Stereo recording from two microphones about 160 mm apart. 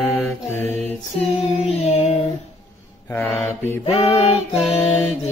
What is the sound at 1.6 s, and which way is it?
Music, 40° left (ahead or behind).